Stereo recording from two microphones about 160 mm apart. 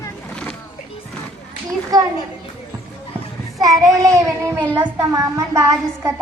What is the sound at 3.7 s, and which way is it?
A woman's voice, 20° right (ahead or behind).